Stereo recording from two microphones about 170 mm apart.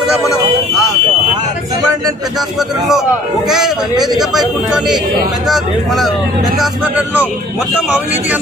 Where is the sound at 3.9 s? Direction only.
25° right (ahead or behind).